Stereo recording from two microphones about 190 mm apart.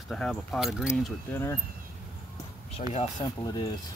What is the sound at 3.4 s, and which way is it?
Speech, 20° left (ahead or behind).